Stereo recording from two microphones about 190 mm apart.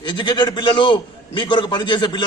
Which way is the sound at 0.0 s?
25° left (ahead or behind).